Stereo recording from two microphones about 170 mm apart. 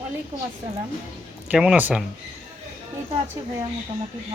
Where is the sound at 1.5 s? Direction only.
5° right (ahead or behind).